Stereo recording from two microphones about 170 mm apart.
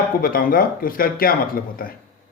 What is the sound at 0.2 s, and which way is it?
Speech, 55° left (ahead or behind).